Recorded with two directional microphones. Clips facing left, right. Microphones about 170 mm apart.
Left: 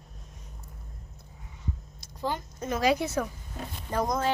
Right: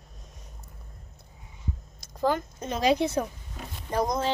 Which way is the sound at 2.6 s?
20° right (ahead or behind).